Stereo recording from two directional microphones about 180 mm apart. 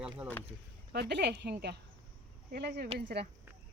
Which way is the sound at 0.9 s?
70° right (ahead or behind).